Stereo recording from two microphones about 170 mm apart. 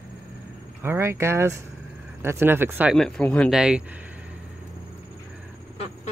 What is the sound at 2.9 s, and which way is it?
Speech, 5° left (ahead or behind).